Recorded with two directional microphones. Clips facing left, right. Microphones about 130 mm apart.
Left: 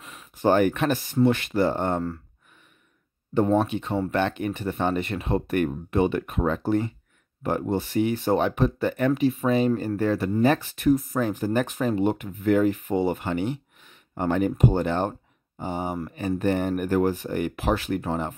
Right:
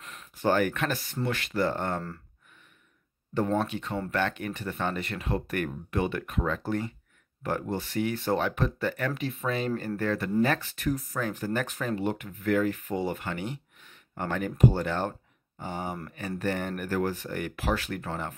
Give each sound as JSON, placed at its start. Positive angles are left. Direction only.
{"t": 0.0, "sound": "a sound", "side_deg": 5}
{"t": 0.4, "sound": "speech", "side_deg": 20}
{"t": 3.3, "sound": "speech", "side_deg": 20}